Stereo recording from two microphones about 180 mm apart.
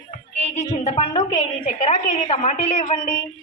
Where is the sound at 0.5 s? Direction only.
35° left (ahead or behind).